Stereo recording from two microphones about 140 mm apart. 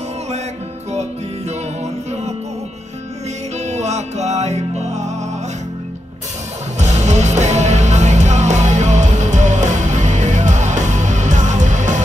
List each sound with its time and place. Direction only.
3.6 s music: 55° right (ahead or behind)
6.8 s music: 55° right (ahead or behind)